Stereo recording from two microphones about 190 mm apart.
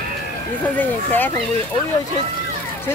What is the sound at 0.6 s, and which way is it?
Speech, 10° left (ahead or behind).